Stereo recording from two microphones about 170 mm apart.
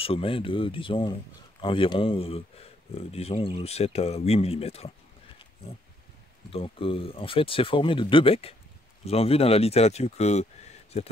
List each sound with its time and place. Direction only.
0.0 s speech: 35° left (ahead or behind)
6.5 s speech: 35° left (ahead or behind)